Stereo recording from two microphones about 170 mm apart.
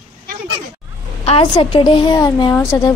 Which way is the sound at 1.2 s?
35° left (ahead or behind).